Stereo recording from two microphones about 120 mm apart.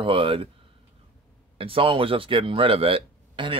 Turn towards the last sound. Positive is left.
turn(degrees=-45)  # may be behind; listen again after turning